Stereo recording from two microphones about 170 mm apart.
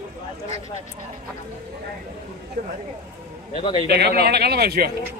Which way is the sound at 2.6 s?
55° right (ahead or behind).